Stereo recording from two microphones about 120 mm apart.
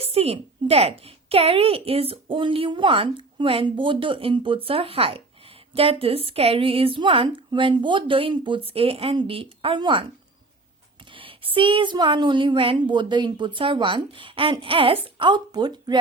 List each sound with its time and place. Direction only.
0.0 s a woman's voice: 55° right (ahead or behind)
11.1 s a woman's voice: 45° right (ahead or behind)